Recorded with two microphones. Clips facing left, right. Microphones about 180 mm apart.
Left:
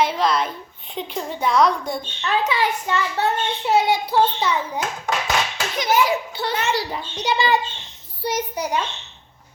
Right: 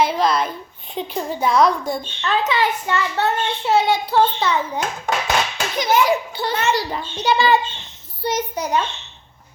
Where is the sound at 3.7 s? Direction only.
15° left (ahead or behind).